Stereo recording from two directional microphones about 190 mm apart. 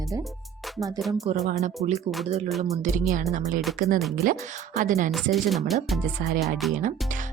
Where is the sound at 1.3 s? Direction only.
35° right (ahead or behind).